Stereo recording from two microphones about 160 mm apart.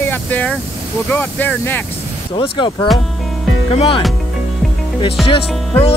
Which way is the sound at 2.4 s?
30° left (ahead or behind).